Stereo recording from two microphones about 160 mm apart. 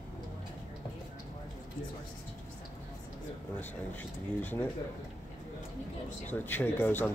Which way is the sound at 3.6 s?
10° left (ahead or behind).